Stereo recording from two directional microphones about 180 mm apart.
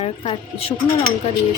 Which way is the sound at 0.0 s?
35° left (ahead or behind).